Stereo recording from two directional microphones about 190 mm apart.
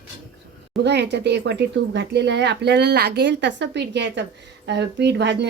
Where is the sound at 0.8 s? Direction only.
65° right (ahead or behind).